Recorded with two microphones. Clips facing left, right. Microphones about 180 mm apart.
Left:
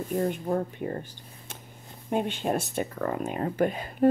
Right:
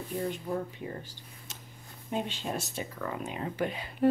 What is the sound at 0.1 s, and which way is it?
Speech, 50° left (ahead or behind).